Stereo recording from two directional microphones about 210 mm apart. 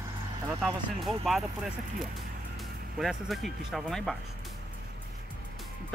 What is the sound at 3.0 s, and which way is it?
Speech, centre (ahead or behind).